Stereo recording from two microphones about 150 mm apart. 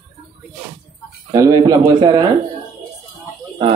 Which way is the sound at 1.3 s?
25° right (ahead or behind).